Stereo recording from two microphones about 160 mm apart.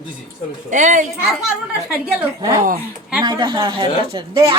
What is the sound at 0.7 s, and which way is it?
Speech, 55° right (ahead or behind).